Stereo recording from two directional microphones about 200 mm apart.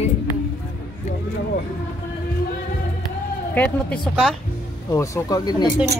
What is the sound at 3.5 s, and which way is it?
Speech, 5° left (ahead or behind).